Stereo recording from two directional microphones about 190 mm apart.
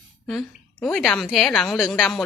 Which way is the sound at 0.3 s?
5° left (ahead or behind).